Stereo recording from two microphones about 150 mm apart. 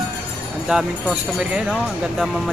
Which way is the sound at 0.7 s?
5° right (ahead or behind).